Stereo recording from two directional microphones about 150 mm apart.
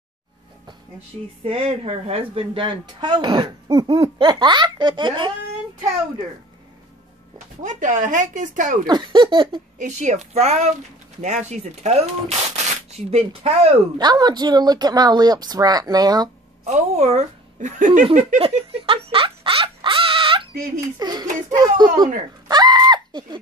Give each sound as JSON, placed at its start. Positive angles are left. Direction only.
{"t": 1.4, "sound": "speech", "side_deg": -40}
{"t": 7.6, "sound": "speech", "side_deg": -60}
{"t": 8.8, "sound": "speech", "side_deg": -30}
{"t": 9.8, "sound": "speech", "side_deg": -50}
{"t": 13.9, "sound": "speech", "side_deg": -25}
{"t": 16.6, "sound": "a woman's voice", "side_deg": -50}
{"t": 18.4, "sound": "a sound", "side_deg": -40}
{"t": 21.0, "sound": "speech", "side_deg": -25}
{"t": 22.5, "sound": "a sound", "side_deg": -25}